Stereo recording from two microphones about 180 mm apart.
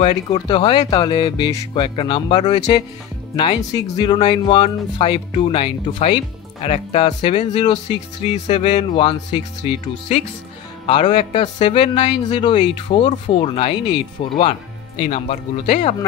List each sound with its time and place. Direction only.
0.3 s speech: 25° left (ahead or behind)
7.5 s speech: 25° left (ahead or behind)